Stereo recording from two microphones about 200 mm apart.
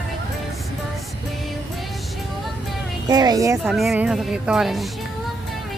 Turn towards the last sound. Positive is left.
turn(degrees=0)  # may be behind; listen again after turning